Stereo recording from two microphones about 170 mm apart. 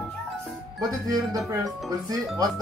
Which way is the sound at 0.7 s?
20° right (ahead or behind).